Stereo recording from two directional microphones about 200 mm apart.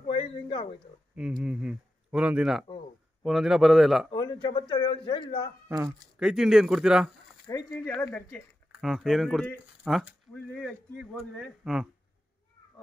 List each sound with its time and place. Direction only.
0.0 s a sound: 25° left (ahead or behind)
1.1 s speech: 5° right (ahead or behind)
4.1 s speech: 20° left (ahead or behind)
5.7 s speech: 15° right (ahead or behind)
6.2 s speech: 5° right (ahead or behind)
7.5 s speech: 20° left (ahead or behind)
8.8 s speech: centre (ahead or behind)